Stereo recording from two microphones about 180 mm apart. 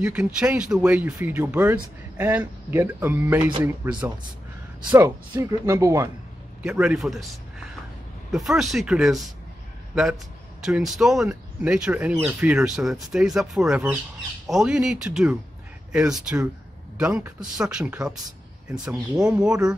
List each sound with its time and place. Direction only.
0.0 s speech: 5° right (ahead or behind)
6.6 s speech: 5° right (ahead or behind)
10.6 s speech: centre (ahead or behind)